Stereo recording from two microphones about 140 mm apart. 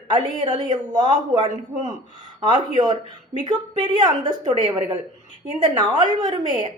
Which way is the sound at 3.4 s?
35° right (ahead or behind).